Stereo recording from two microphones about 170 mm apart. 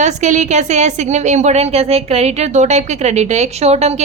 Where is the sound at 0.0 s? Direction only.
45° right (ahead or behind).